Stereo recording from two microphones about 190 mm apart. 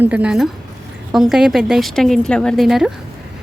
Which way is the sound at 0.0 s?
5° right (ahead or behind).